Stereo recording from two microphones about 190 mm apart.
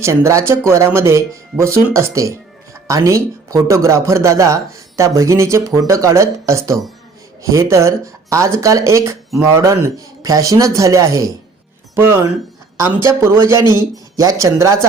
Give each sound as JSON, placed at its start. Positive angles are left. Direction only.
{"t": 0.0, "sound": "speech", "side_deg": -15}